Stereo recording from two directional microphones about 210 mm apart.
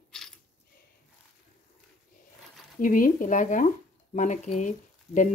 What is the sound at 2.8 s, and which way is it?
Speech, 40° left (ahead or behind).